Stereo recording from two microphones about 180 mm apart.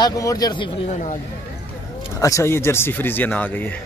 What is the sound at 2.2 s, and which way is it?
Speech, 15° left (ahead or behind).